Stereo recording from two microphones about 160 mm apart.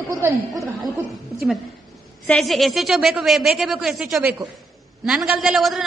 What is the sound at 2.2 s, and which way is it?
A woman's voice, 5° left (ahead or behind).